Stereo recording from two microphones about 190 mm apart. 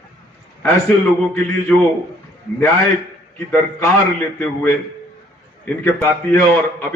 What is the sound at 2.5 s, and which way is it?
A man's voice, 10° left (ahead or behind).